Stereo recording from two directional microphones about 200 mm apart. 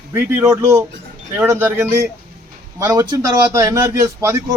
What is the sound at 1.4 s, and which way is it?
A man's voice, 10° right (ahead or behind).